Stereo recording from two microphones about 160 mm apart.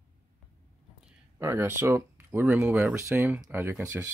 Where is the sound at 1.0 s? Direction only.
15° right (ahead or behind).